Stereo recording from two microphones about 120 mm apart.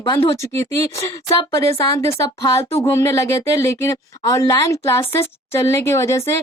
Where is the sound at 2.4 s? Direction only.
25° left (ahead or behind).